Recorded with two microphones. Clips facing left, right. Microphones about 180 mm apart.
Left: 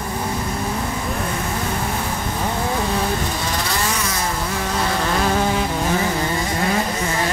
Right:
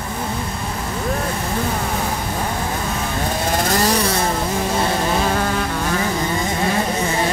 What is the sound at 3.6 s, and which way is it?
Vehicle, 40° right (ahead or behind).